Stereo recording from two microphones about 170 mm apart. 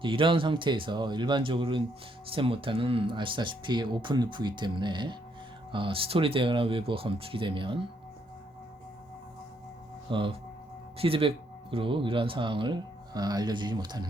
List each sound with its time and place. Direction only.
0.0 s speech: 30° right (ahead or behind)
10.1 s speech: 30° right (ahead or behind)